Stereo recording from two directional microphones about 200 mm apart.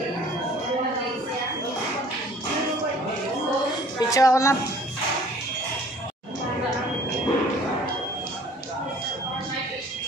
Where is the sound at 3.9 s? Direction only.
15° left (ahead or behind).